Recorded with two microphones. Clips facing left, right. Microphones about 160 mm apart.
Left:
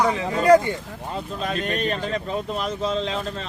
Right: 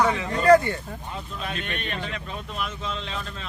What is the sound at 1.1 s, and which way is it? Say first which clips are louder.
Speech: left 7 dB; 40° left (ahead or behind).